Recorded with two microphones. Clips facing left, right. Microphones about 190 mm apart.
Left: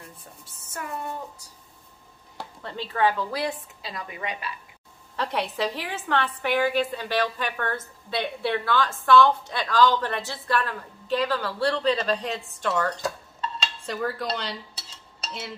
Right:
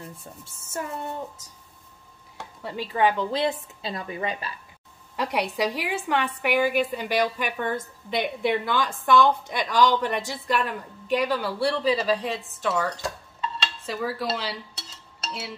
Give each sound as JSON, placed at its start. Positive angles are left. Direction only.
{"t": 0.2, "sound": "a woman's voice", "side_deg": -25}
{"t": 2.6, "sound": "a woman's voice", "side_deg": -10}
{"t": 5.1, "sound": "a woman's voice", "side_deg": -10}
{"t": 13.8, "sound": "dishes", "side_deg": -5}